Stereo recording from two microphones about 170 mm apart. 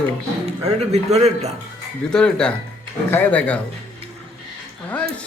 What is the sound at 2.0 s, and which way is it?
Speech, 5° left (ahead or behind).